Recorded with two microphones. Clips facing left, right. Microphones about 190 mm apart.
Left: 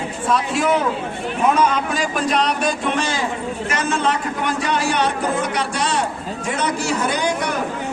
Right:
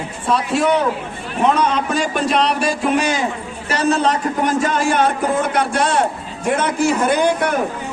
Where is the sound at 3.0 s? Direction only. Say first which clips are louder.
Right 3 dB; 15° right (ahead or behind).